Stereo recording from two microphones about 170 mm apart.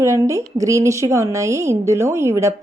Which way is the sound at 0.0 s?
15° right (ahead or behind).